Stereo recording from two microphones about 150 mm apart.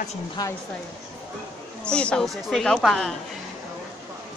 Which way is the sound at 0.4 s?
25° left (ahead or behind).